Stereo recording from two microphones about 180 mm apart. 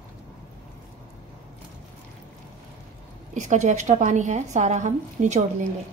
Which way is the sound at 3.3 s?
40° right (ahead or behind).